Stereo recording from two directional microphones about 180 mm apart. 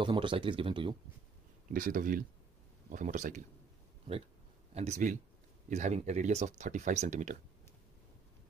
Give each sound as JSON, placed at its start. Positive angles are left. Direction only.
{"t": 0.0, "sound": "speech", "side_deg": -25}
{"t": 1.7, "sound": "speech", "side_deg": -50}
{"t": 4.7, "sound": "speech", "side_deg": -40}